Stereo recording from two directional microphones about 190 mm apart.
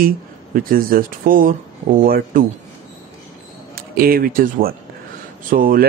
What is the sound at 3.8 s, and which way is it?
Speech, 50° right (ahead or behind).